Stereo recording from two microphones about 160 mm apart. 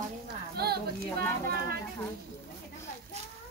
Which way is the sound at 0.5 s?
80° right.